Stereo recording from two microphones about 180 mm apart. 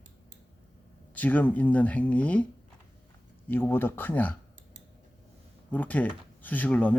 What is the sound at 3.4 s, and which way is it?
Speech, 10° left (ahead or behind).